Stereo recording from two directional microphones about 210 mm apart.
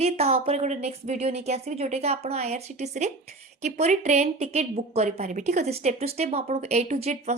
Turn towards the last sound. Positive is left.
turn(degrees=-30)  # may be behind; listen again after turning